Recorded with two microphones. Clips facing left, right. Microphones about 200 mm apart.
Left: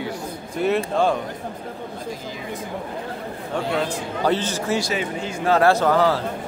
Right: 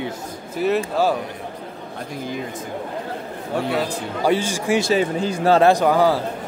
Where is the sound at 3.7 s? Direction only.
10° right (ahead or behind).